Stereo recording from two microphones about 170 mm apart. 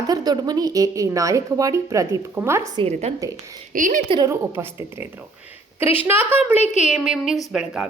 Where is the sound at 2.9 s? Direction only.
40° right (ahead or behind).